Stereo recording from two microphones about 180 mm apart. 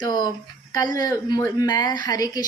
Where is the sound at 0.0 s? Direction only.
25° left (ahead or behind).